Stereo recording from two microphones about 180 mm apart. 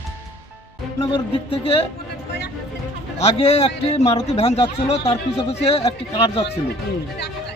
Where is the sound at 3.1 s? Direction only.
35° left (ahead or behind).